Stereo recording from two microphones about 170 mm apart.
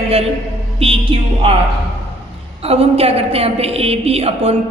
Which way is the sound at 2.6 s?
35° right (ahead or behind).